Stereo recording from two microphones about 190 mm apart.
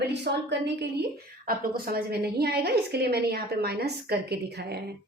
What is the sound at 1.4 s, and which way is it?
A woman's voice, 50° right (ahead or behind).